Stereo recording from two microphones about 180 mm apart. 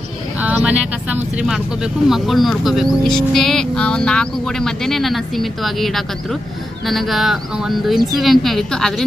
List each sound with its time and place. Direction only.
0.4 s speech: 10° right (ahead or behind)